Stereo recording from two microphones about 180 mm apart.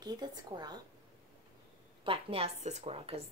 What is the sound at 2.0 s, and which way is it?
A woman's voice, 30° right (ahead or behind).